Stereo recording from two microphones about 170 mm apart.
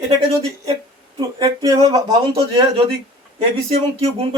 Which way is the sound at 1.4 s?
25° right (ahead or behind).